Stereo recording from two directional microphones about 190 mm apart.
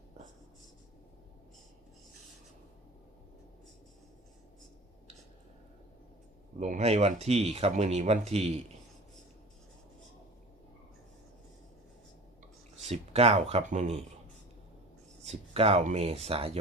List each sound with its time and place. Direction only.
6.6 s speech: 35° right (ahead or behind)
12.8 s speech: 35° right (ahead or behind)
15.2 s speech: 30° right (ahead or behind)